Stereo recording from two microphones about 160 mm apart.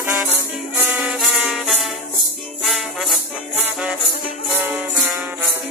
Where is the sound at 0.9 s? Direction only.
Centre (ahead or behind).